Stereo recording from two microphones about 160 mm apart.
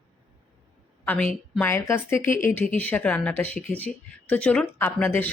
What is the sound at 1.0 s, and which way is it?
A woman's voice, 10° left (ahead or behind).